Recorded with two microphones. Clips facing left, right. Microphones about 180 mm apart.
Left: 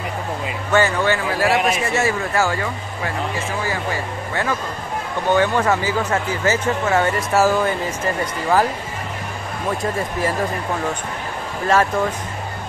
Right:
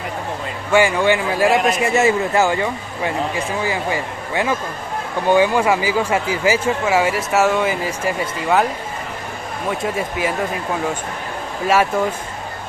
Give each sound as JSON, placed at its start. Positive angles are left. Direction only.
{"t": 0.7, "sound": "speech", "side_deg": -10}
{"t": 1.5, "sound": "a man's voice", "side_deg": 0}
{"t": 2.0, "sound": "speech", "side_deg": -20}
{"t": 11.6, "sound": "speech", "side_deg": -10}